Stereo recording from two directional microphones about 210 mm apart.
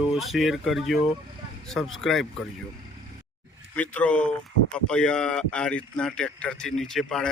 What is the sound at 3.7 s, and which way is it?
A man's voice, 5° left (ahead or behind).